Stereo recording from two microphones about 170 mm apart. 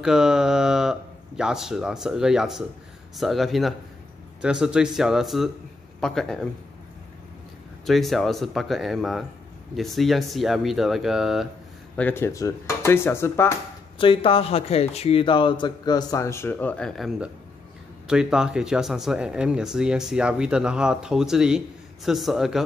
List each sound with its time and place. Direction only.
0.0 s speech: 5° right (ahead or behind)
7.8 s speech: centre (ahead or behind)
12.0 s dishes: 15° left (ahead or behind)
13.9 s speech: 30° left (ahead or behind); by 22.6 s centre (ahead or behind)